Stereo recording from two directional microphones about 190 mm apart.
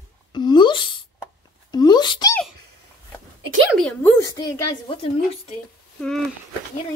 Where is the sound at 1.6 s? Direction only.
20° left (ahead or behind).